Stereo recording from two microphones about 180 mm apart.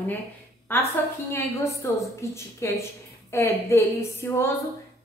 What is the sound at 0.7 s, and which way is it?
A woman's voice, 10° left (ahead or behind).